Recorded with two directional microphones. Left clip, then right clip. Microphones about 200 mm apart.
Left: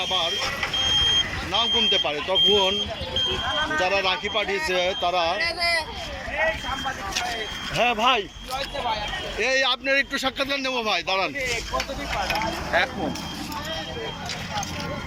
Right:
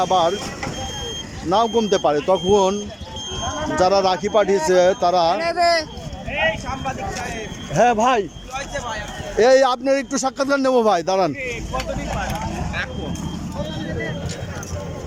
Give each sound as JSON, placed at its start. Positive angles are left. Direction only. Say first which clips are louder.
{"t": 0.0, "sound": "speech", "louder": "right 7 dB", "side_deg": -30}
{"t": 0.3, "sound": "speech", "louder": "right 2 dB", "side_deg": -60}
{"t": 1.5, "sound": "speech", "louder": "right 6 dB", "side_deg": -35}
{"t": 3.8, "sound": "speech", "louder": "right 9 dB", "side_deg": -30}
{"t": 5.4, "sound": "speech", "louder": "right 6 dB", "side_deg": -60}
{"t": 7.8, "sound": "speech", "louder": "right 5 dB", "side_deg": -25}
{"t": 9.4, "sound": "speech", "louder": "right 9 dB", "side_deg": -40}